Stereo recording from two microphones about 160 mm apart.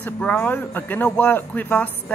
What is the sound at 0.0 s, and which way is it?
Speech, 10° left (ahead or behind).